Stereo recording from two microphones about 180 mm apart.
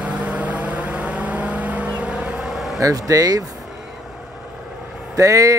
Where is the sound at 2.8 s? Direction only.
20° right (ahead or behind).